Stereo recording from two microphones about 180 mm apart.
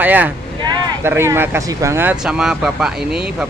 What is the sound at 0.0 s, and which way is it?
Speech, 10° right (ahead or behind).